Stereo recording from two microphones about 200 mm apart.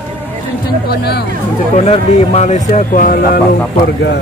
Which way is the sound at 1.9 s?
35° left (ahead or behind).